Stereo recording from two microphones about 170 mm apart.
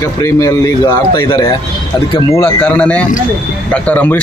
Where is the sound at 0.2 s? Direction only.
20° left (ahead or behind).